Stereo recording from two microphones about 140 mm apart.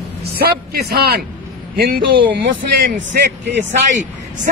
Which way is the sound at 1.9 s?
35° right (ahead or behind).